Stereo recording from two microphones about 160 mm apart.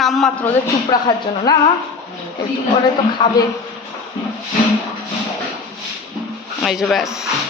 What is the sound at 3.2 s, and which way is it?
Speech, 30° left (ahead or behind).